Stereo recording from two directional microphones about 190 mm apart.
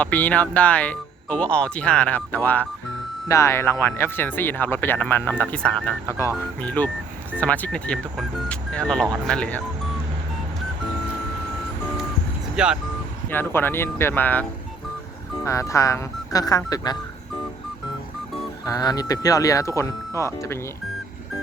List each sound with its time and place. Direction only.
0.0 s speech: 10° left (ahead or behind)
12.5 s speech: 5° right (ahead or behind)
13.3 s speech: 10° left (ahead or behind)
15.4 s speech: 15° left (ahead or behind)
18.6 s speech: 20° left (ahead or behind)